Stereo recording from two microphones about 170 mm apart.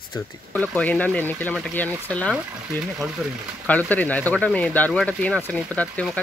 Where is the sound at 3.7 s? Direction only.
10° left (ahead or behind).